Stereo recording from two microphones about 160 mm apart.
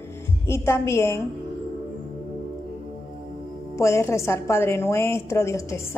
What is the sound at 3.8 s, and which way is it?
A woman's voice, 15° left (ahead or behind).